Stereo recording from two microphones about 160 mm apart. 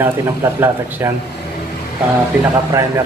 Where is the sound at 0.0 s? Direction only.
15° right (ahead or behind).